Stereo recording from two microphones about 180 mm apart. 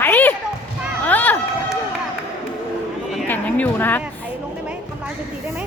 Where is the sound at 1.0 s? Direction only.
10° left (ahead or behind).